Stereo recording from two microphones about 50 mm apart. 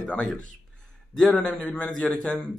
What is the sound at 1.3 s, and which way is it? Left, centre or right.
A man's voice, centre.